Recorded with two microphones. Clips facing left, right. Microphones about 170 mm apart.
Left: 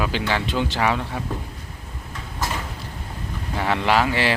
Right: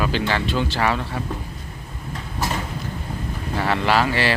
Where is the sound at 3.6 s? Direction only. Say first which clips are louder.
Even; 15° left (ahead or behind).